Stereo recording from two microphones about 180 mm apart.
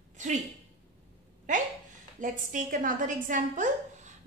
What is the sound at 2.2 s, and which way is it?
A woman's voice, 45° right (ahead or behind).